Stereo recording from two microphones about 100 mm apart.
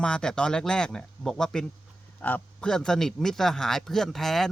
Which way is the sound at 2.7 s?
5° left (ahead or behind).